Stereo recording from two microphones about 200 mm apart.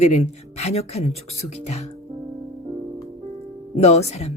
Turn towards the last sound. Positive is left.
turn(degrees=30)  # may be behind; listen again after turning